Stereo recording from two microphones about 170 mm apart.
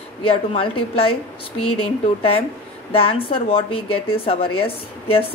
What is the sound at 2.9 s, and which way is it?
A woman's voice, 30° left (ahead or behind).